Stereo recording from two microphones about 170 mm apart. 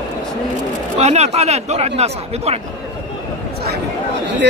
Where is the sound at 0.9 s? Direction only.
40° right (ahead or behind).